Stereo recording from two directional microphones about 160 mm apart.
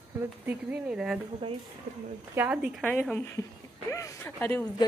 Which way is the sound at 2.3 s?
10° right (ahead or behind).